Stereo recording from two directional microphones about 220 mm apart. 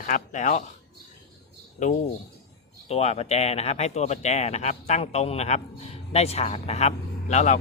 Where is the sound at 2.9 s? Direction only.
30° left (ahead or behind).